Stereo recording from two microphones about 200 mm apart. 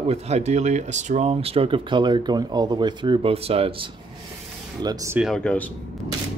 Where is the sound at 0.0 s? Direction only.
30° right (ahead or behind).